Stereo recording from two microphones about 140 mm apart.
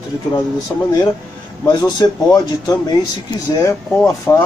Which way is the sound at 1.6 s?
30° left (ahead or behind).